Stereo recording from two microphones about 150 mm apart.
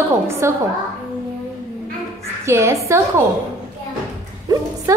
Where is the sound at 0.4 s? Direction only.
20° right (ahead or behind).